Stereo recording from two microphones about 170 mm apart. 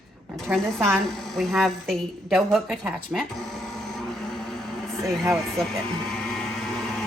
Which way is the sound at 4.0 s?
Centre (ahead or behind).